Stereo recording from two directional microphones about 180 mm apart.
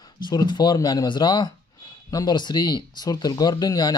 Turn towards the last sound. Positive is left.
turn(degrees=20)  # may be behind; listen again after turning